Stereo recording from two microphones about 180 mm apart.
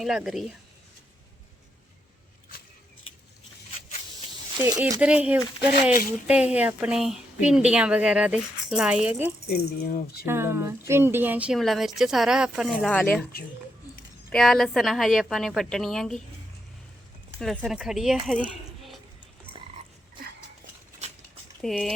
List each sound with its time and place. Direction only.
0.0 s a woman's voice: 5° right (ahead or behind)
4.5 s speech: 20° right (ahead or behind)
4.8 s a woman's voice: 10° right (ahead or behind)
9.5 s a sound: 60° left (ahead or behind)
10.2 s a woman's voice: 15° right (ahead or behind); by 13.2 s 5° left (ahead or behind)
14.3 s a woman's voice: 5° left (ahead or behind)
17.4 s a woman's voice: centre (ahead or behind)
21.6 s a woman's voice: centre (ahead or behind)